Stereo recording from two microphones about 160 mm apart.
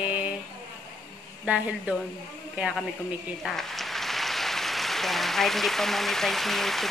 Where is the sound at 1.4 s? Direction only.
5° right (ahead or behind).